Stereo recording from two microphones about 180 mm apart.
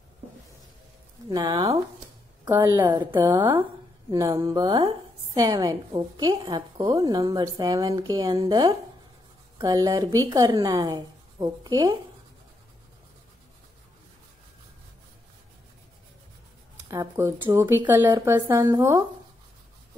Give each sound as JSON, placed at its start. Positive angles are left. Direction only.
{"t": 1.3, "sound": "a woman's voice", "side_deg": -20}
{"t": 3.2, "sound": "a woman's voice", "side_deg": -25}
{"t": 16.9, "sound": "a woman's voice", "side_deg": -20}